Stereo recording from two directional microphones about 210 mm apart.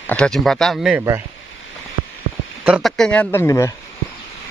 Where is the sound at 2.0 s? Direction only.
30° right (ahead or behind).